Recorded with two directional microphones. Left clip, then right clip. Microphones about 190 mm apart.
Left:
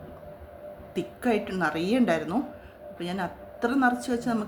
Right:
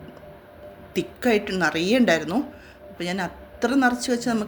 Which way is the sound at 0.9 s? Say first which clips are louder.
Right 5 dB; 25° right (ahead or behind).